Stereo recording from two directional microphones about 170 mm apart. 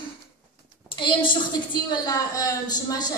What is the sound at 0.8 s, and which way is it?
A woman's voice, 30° left (ahead or behind).